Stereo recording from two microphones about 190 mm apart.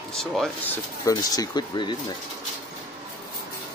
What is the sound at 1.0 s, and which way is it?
Speech, 20° left (ahead or behind).